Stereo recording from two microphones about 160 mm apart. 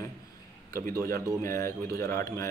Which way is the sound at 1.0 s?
20° left (ahead or behind).